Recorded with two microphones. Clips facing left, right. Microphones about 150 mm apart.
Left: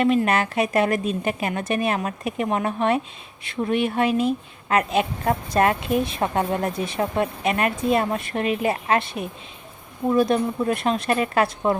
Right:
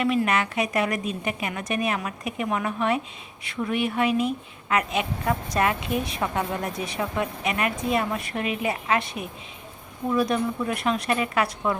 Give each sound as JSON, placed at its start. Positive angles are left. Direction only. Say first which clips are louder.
{"t": 0.0, "sound": "speech", "louder": "left 4 dB", "side_deg": 35}